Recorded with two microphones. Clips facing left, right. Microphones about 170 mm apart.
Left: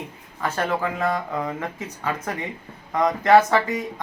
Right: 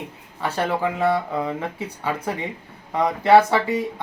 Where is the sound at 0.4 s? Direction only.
15° right (ahead or behind).